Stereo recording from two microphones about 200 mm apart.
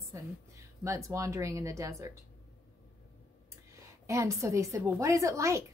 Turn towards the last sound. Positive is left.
turn(degrees=-15)  # may be behind; listen again after turning